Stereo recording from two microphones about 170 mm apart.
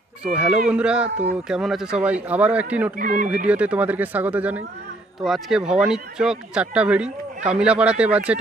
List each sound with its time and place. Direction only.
0.2 s speech: 5° right (ahead or behind)
3.0 s speech: 50° right (ahead or behind)
3.4 s speech: 10° right (ahead or behind)